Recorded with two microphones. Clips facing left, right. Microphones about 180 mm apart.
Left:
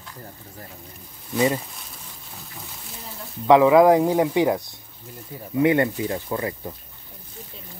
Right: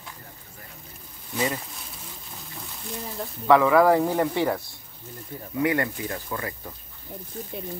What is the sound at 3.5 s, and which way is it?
Speech, 20° left (ahead or behind).